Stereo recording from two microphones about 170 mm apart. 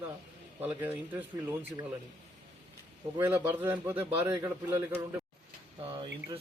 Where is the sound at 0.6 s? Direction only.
10° right (ahead or behind).